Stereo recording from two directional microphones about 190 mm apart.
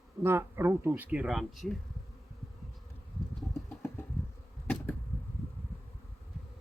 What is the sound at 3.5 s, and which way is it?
Engine, 15° left (ahead or behind).